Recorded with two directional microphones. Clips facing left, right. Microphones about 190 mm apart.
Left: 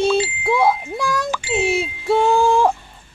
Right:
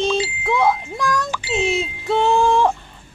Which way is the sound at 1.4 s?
50° left (ahead or behind).